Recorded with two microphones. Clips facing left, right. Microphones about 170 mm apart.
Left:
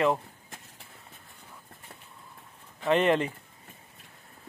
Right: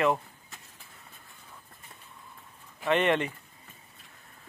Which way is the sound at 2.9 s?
35° left (ahead or behind).